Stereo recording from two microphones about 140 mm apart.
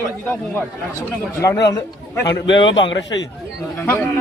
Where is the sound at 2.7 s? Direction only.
35° left (ahead or behind).